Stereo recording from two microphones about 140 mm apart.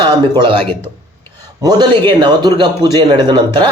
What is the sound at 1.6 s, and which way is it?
A man's voice, 30° right (ahead or behind).